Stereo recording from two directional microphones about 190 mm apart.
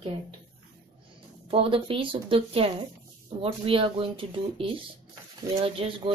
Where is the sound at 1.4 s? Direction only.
30° right (ahead or behind).